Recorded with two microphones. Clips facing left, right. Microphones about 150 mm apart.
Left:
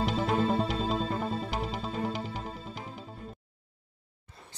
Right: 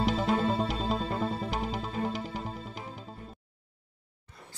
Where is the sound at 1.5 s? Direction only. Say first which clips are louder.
Even; centre (ahead or behind).